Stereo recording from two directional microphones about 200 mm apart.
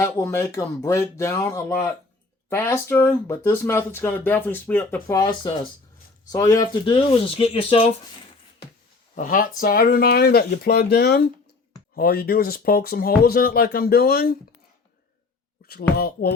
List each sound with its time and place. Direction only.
0.0 s speech: 15° left (ahead or behind); by 7.9 s 30° left (ahead or behind)
9.1 s speech: 40° left (ahead or behind)
16.0 s speech: 50° left (ahead or behind)